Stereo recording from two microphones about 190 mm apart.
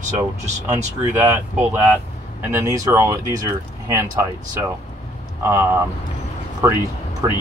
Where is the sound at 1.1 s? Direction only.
10° right (ahead or behind).